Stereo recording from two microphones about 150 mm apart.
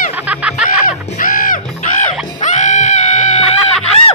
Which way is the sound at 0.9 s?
65° left (ahead or behind).